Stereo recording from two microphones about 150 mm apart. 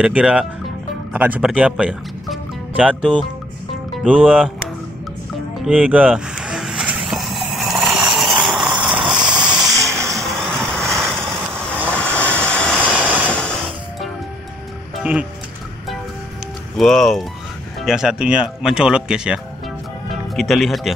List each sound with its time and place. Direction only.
0.0 s speech: 5° right (ahead or behind)
5.7 s vehicle: 10° right (ahead or behind)
9.3 s music: 30° right (ahead or behind)
10.4 s vehicle: 5° left (ahead or behind)
12.7 s vehicle: 10° right (ahead or behind)
13.2 s music: 5° left (ahead or behind)
16.7 s speech: centre (ahead or behind)